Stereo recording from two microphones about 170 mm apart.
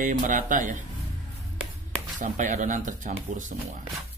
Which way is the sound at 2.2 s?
45° right (ahead or behind).